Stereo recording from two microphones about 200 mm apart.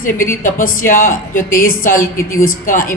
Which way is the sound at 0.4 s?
40° left (ahead or behind).